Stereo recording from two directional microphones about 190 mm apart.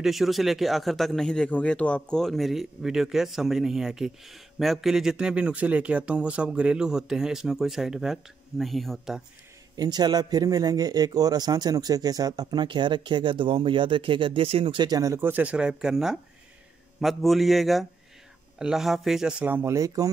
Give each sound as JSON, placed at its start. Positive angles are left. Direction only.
{"t": 0.0, "sound": "speech", "side_deg": 0}
{"t": 9.8, "sound": "speech", "side_deg": -20}